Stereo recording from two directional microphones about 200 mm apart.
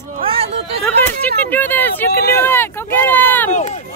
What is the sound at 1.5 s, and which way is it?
Speech, 10° left (ahead or behind).